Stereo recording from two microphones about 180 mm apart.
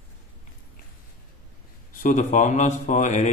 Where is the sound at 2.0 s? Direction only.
40° left (ahead or behind).